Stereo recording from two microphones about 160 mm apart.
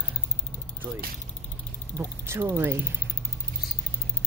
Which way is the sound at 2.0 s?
15° right (ahead or behind).